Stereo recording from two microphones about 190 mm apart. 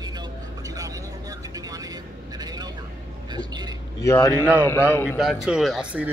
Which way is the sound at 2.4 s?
20° right (ahead or behind).